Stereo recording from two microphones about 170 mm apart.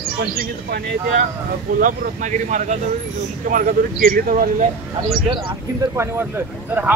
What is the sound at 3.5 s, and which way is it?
Speech, 55° right (ahead or behind).